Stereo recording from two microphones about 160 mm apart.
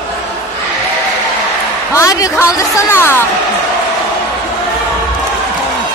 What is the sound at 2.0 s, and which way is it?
A woman's voice, 20° left (ahead or behind).